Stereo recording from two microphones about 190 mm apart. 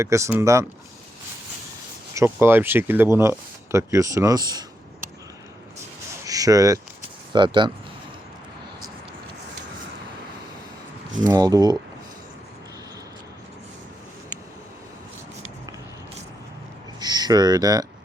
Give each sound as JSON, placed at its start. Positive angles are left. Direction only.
{"t": 0.0, "sound": "speech", "side_deg": -15}
{"t": 2.1, "sound": "speech", "side_deg": -10}
{"t": 6.2, "sound": "a sound", "side_deg": -20}
{"t": 7.3, "sound": "speech", "side_deg": -25}
{"t": 11.3, "sound": "speech", "side_deg": -20}
{"t": 17.0, "sound": "speech", "side_deg": -20}